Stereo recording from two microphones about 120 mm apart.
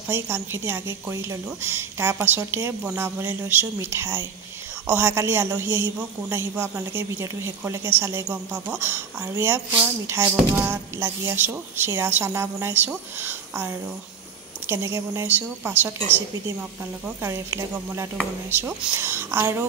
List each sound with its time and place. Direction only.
0.1 s a woman's voice: 20° right (ahead or behind)
6.5 s speech: 10° right (ahead or behind)
6.9 s a woman's voice: 25° right (ahead or behind)
17.2 s a woman's voice: 20° right (ahead or behind)